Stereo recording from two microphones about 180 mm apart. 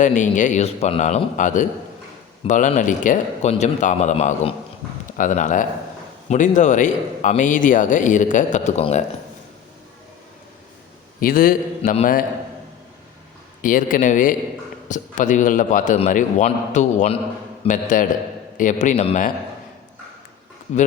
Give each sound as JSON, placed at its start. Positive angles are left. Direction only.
{"t": 0.0, "sound": "a man's voice", "side_deg": 45}
{"t": 11.2, "sound": "a man's voice", "side_deg": 50}
{"t": 13.6, "sound": "a man's voice", "side_deg": 50}
{"t": 20.7, "sound": "a man's voice", "side_deg": 40}